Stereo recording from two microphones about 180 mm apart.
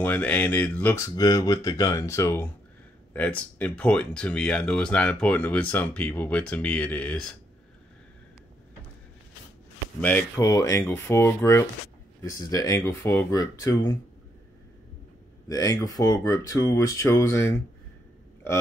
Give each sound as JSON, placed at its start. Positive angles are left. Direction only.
{"t": 0.0, "sound": "speech", "side_deg": 10}
{"t": 9.9, "sound": "speech", "side_deg": 10}
{"t": 15.4, "sound": "speech", "side_deg": 20}